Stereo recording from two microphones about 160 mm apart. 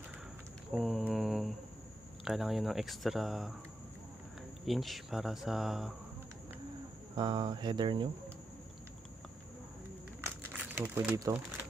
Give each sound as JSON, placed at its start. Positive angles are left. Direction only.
{"t": 0.7, "sound": "mantra", "side_deg": 0}
{"t": 2.2, "sound": "speech", "side_deg": 0}
{"t": 4.6, "sound": "speech", "side_deg": 0}
{"t": 7.2, "sound": "speech", "side_deg": -30}
{"t": 10.2, "sound": "crumpling", "side_deg": -15}